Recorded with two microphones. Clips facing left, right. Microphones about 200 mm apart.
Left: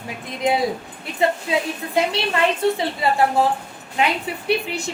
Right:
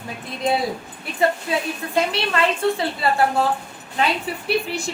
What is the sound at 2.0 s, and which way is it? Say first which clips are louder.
A woman's voice: left 1 dB; 20° left (ahead or behind).